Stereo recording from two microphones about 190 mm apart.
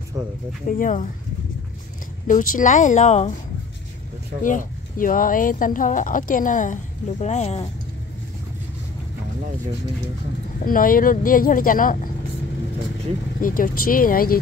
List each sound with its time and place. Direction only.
0.7 s speech: 45° left (ahead or behind)
2.2 s speech: 40° left (ahead or behind)
4.4 s speech: 45° left (ahead or behind)
10.6 s speech: 45° left (ahead or behind)
13.4 s speech: 45° left (ahead or behind)